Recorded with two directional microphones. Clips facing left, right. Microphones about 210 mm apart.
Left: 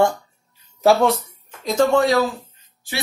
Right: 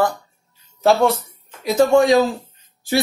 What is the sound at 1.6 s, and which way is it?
Speech, 5° right (ahead or behind).